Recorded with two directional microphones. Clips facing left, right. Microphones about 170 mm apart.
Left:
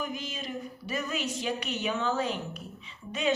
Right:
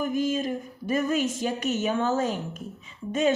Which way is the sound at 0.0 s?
50° right (ahead or behind).